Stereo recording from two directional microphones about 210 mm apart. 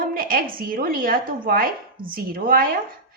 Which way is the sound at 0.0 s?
45° right (ahead or behind).